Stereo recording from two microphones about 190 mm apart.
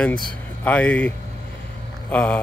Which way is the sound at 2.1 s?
10° left (ahead or behind).